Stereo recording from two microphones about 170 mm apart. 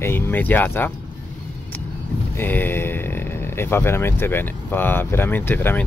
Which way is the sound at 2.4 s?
10° left (ahead or behind).